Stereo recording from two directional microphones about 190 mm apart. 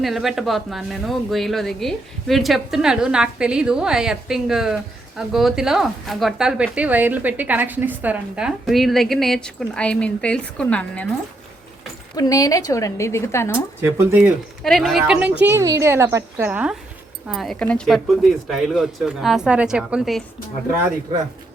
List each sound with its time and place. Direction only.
0.0 s speech: centre (ahead or behind)
12.1 s a woman's voice: 20° left (ahead or behind)
13.8 s speech: 10° right (ahead or behind)
15.4 s a woman's voice: 15° right (ahead or behind)